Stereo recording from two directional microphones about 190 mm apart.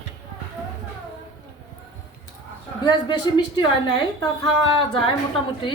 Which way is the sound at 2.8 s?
25° left (ahead or behind).